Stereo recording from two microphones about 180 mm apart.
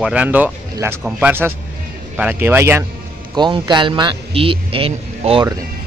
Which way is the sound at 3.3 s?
25° right (ahead or behind).